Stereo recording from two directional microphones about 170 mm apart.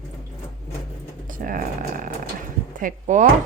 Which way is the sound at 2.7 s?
50° right (ahead or behind).